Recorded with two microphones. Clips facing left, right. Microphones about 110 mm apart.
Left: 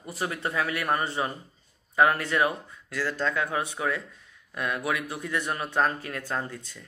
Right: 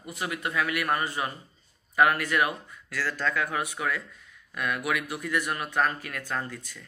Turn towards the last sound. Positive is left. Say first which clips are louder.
# left 1 dB
turn(degrees=25)  # may be behind; listen again after turning